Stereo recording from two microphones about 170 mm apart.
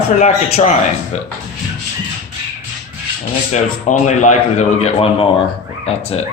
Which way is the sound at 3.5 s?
45° left (ahead or behind).